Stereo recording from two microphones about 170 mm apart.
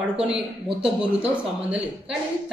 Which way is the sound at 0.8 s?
5° right (ahead or behind).